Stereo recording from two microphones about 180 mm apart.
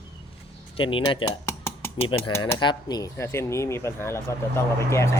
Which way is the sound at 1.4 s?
15° left (ahead or behind).